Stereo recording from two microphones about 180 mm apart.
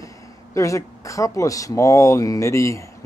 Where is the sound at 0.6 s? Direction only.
15° left (ahead or behind).